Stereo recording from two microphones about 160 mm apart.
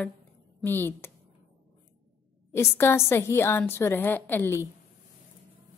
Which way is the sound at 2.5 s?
15° left (ahead or behind).